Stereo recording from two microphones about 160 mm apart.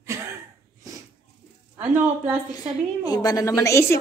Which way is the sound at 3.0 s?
25° left (ahead or behind).